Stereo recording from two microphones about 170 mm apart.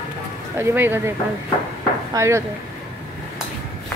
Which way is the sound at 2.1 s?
15° right (ahead or behind).